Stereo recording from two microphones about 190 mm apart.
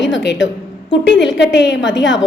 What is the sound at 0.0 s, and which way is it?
A woman's voice, 70° left (ahead or behind).